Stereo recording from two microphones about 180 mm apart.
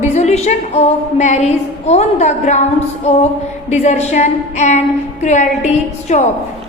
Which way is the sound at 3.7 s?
40° left (ahead or behind).